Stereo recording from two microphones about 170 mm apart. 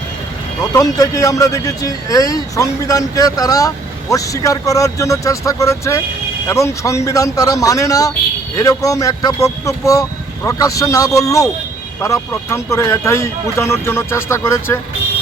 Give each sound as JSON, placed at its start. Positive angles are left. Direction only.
{"t": 0.6, "sound": "a man's voice", "side_deg": 20}